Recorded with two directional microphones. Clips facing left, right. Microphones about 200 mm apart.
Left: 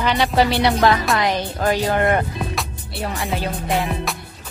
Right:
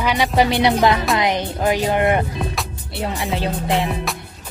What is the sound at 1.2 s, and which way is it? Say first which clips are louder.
Speech: right 1 dB; 20° right (ahead or behind).